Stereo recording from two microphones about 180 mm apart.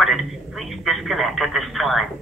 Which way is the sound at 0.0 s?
Centre (ahead or behind).